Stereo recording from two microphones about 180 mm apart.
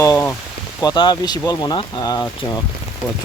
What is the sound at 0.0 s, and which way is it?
Speech, 15° left (ahead or behind).